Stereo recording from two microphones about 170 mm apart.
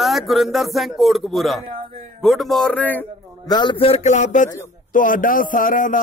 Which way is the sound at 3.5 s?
25° left (ahead or behind).